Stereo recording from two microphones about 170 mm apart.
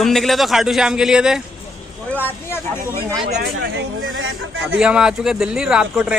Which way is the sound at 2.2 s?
15° left (ahead or behind).